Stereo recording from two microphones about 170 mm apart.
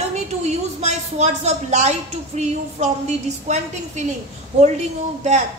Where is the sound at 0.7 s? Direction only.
40° right (ahead or behind).